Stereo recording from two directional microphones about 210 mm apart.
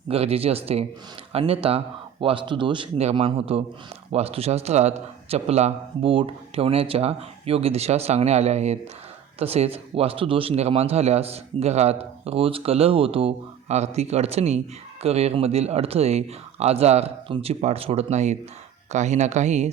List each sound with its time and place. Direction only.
0.1 s a man's voice: 30° right (ahead or behind)